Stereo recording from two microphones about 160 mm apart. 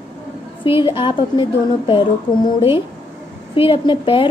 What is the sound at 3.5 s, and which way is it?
Speech, 35° left (ahead or behind).